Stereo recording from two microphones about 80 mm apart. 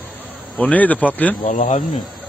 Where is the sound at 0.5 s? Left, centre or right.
Centre.